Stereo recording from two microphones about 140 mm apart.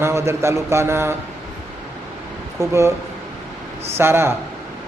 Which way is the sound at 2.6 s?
20° right (ahead or behind).